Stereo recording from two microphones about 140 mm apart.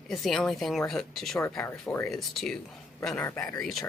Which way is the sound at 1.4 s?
20° left (ahead or behind).